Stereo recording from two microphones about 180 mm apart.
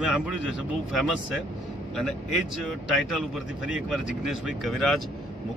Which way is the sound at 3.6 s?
5° right (ahead or behind).